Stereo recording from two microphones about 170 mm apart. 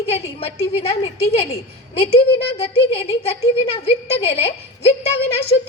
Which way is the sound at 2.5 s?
35° left (ahead or behind).